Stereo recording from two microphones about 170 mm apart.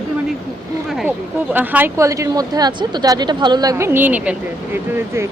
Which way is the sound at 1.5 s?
10° right (ahead or behind).